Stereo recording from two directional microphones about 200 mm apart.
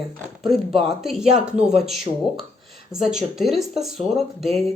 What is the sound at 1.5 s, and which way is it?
Speech, 5° right (ahead or behind).